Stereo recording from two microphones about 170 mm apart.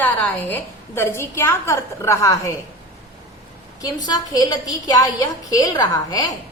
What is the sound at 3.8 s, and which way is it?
A woman's voice, 20° left (ahead or behind).